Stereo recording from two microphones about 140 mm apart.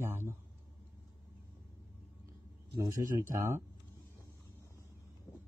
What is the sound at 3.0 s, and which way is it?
Speech, 70° right (ahead or behind).